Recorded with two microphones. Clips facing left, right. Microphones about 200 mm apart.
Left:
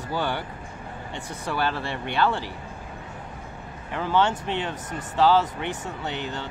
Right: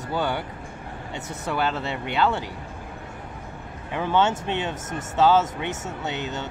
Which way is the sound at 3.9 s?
20° right (ahead or behind).